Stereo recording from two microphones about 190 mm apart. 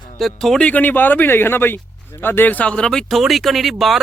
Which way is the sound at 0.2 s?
Centre (ahead or behind).